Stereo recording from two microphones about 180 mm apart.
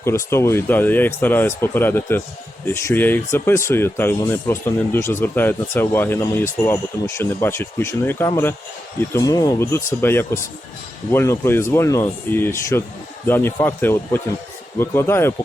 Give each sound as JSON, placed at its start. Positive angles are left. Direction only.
{"t": 0.0, "sound": "speech", "side_deg": 15}